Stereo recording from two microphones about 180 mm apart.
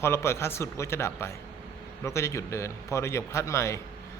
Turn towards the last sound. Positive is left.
turn(degrees=15)  # may be behind; listen again after turning